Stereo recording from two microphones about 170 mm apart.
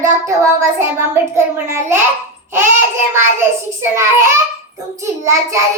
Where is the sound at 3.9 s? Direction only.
15° right (ahead or behind).